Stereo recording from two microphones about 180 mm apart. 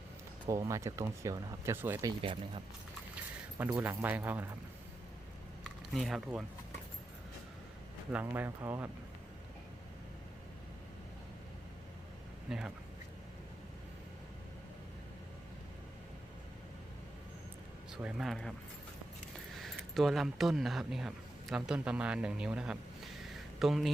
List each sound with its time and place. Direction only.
0.4 s speech: 15° right (ahead or behind)
2.2 s speech: 30° right (ahead or behind)
3.7 s speech: 10° right (ahead or behind)
5.9 s speech: centre (ahead or behind)
8.1 s speech: 10° right (ahead or behind)
12.5 s speech: 5° right (ahead or behind)
17.9 s speech: 5° right (ahead or behind)
19.5 s a man's voice: centre (ahead or behind)